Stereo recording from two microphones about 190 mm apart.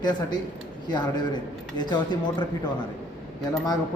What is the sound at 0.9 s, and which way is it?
A man's voice, 25° left (ahead or behind).